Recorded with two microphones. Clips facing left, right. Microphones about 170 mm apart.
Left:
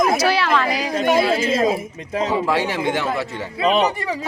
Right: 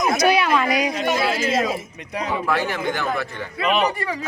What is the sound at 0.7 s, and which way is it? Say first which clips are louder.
Speech: right 2 dB; 30° left (ahead or behind).